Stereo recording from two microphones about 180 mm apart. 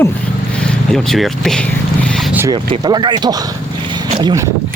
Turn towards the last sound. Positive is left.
turn(degrees=-25)  # may be behind; listen again after turning